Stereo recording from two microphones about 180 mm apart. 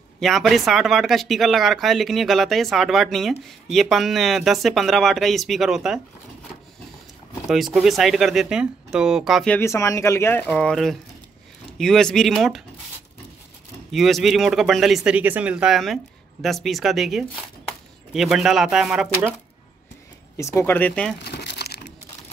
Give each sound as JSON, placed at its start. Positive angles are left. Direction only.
{"t": 0.2, "sound": "speech", "side_deg": 0}
{"t": 7.4, "sound": "speech", "side_deg": 0}
{"t": 9.6, "sound": "speech", "side_deg": 15}
{"t": 13.9, "sound": "speech", "side_deg": 0}
{"t": 20.3, "sound": "speech", "side_deg": 15}
{"t": 21.2, "sound": "crumpling", "side_deg": 65}